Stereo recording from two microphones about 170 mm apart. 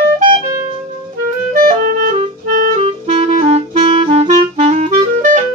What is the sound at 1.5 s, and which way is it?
Clarinet, 55° right (ahead or behind).